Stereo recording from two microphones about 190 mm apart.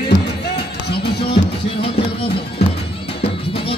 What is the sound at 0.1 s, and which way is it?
Music, 45° right (ahead or behind).